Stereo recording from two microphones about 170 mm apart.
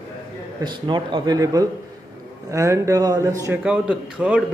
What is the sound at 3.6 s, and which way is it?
Speech, 5° right (ahead or behind).